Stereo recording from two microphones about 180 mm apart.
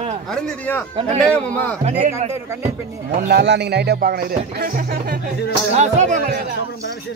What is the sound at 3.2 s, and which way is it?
Speech, 65° right (ahead or behind).